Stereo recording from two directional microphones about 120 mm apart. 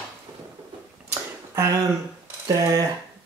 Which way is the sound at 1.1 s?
25° right (ahead or behind).